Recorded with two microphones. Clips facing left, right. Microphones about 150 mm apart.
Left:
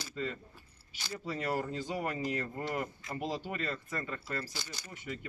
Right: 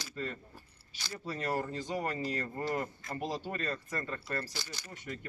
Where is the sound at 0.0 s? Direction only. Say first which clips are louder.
Left 2 dB; 15° left (ahead or behind).